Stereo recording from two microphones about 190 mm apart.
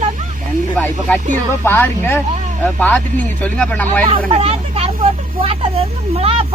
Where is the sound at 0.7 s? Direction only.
5° left (ahead or behind).